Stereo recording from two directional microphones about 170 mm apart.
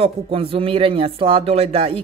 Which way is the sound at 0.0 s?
35° right (ahead or behind).